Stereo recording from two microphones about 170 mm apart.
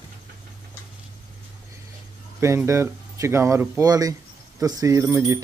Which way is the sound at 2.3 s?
15° right (ahead or behind).